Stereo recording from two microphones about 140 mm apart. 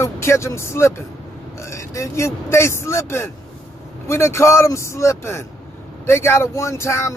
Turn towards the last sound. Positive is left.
turn(degrees=20)  # may be behind; listen again after turning